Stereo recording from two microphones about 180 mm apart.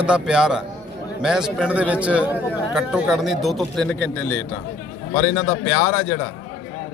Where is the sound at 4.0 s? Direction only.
10° left (ahead or behind).